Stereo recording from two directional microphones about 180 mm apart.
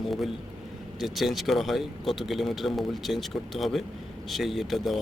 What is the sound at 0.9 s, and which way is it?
A man's voice, centre (ahead or behind).